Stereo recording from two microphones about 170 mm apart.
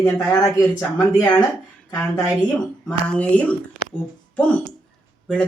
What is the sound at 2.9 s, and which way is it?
A woman's voice, 5° left (ahead or behind).